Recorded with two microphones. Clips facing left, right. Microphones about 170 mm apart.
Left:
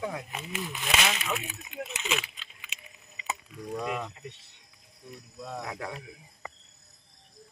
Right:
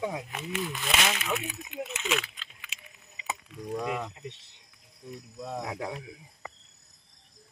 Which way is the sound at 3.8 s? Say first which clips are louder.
Left 1 dB; 15° right (ahead or behind).